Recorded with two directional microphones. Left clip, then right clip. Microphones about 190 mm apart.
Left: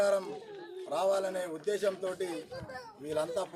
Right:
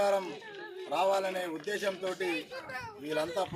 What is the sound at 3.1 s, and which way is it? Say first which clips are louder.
Speech: right 1 dB; 35° left (ahead or behind).